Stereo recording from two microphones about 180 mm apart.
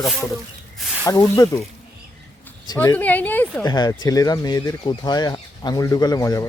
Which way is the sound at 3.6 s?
25° left (ahead or behind).